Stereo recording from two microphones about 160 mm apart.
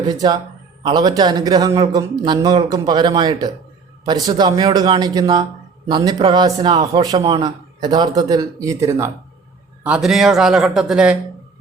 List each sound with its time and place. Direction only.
0.1 s speech: 25° right (ahead or behind)
7.2 s a man's voice: 40° right (ahead or behind)
7.4 s speech: 25° right (ahead or behind)
9.8 s a man's voice: 5° right (ahead or behind)